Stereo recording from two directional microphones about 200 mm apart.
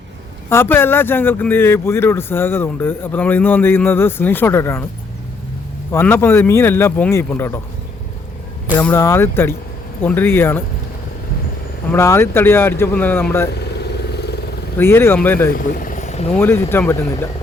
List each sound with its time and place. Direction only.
0.5 s speech: 10° left (ahead or behind)
5.9 s speech: 10° left (ahead or behind)
8.8 s speech: 10° left (ahead or behind)
11.9 s speech: 10° left (ahead or behind)
13.5 s vehicle: 55° left (ahead or behind)
14.8 s speech: 10° left (ahead or behind)
15.4 s speech: 45° left (ahead or behind)
16.3 s speech: 10° left (ahead or behind)